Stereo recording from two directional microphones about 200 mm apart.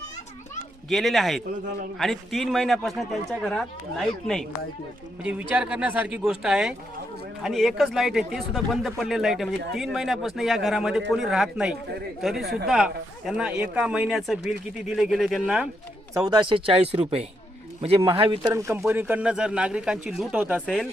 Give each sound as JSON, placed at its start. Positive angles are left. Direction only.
{"t": 0.9, "sound": "a man's voice", "side_deg": 0}
{"t": 12.4, "sound": "speech", "side_deg": -55}
{"t": 12.6, "sound": "a man's voice", "side_deg": 0}
{"t": 16.4, "sound": "a man's voice", "side_deg": -25}